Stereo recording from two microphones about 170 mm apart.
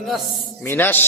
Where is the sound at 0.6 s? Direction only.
10° left (ahead or behind).